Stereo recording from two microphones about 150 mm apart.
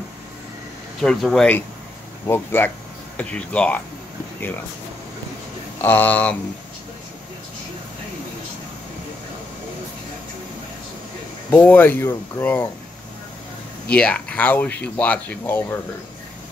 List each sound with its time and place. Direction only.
1.0 s speech: 5° left (ahead or behind)
2.2 s speech: 15° left (ahead or behind)
5.8 s speech: 15° left (ahead or behind)
11.5 s speech: 10° left (ahead or behind)
13.9 s speech: 10° left (ahead or behind)